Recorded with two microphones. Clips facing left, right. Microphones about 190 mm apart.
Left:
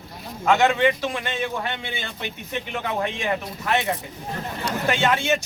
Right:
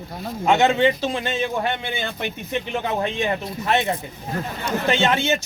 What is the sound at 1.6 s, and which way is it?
Speech, 50° right (ahead or behind).